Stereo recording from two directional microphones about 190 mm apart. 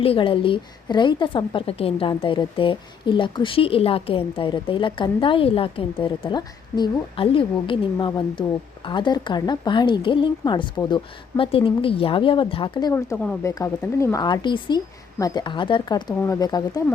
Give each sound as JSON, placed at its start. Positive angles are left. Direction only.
{"t": 0.0, "sound": "a woman's voice", "side_deg": 30}
{"t": 12.9, "sound": "a woman's voice", "side_deg": 15}